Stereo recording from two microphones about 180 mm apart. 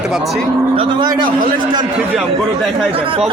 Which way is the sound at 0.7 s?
25° right (ahead or behind).